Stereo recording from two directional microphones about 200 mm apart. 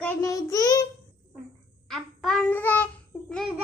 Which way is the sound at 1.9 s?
Centre (ahead or behind).